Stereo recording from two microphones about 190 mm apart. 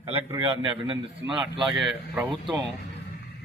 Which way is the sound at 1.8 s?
5° right (ahead or behind).